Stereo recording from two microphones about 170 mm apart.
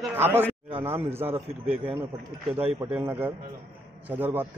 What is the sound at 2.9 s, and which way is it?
A man's voice, 10° right (ahead or behind).